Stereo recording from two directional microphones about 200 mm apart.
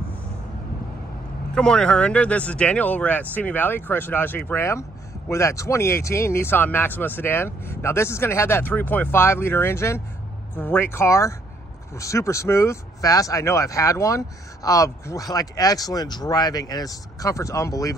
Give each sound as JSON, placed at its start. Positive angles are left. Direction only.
{"t": 1.5, "sound": "speech", "side_deg": 5}